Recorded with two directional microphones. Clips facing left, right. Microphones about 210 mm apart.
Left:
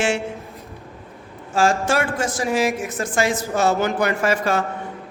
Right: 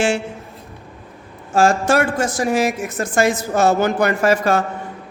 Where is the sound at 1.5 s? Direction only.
45° right (ahead or behind).